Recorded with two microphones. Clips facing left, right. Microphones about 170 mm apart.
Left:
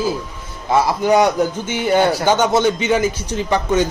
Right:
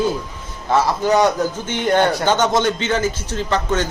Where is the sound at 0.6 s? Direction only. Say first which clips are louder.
Left 1 dB; 15° left (ahead or behind).